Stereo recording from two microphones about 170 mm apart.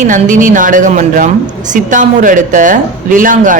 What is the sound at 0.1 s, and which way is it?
Speech, 50° right (ahead or behind).